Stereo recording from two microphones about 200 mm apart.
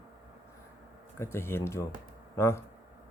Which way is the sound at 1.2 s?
10° left (ahead or behind).